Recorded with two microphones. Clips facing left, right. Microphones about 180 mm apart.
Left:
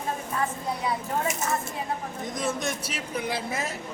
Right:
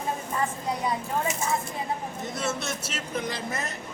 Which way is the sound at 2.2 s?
15° left (ahead or behind).